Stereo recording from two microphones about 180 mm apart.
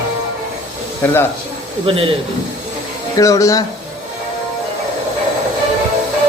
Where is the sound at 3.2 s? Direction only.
20° left (ahead or behind).